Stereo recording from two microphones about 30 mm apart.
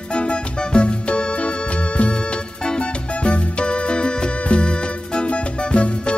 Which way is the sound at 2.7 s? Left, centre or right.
Left.